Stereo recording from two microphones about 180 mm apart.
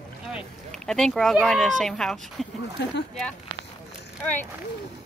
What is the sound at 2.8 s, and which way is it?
Speech, 70° left (ahead or behind).